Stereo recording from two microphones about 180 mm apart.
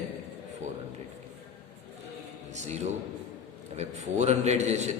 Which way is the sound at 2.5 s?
40° right (ahead or behind).